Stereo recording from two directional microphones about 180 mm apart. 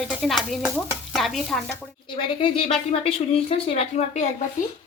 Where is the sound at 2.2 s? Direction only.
30° left (ahead or behind).